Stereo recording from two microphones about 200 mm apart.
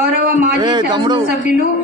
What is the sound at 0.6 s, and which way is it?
Speech, 20° right (ahead or behind).